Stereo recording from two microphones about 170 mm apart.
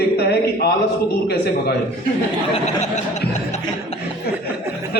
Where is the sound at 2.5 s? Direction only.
40° left (ahead or behind).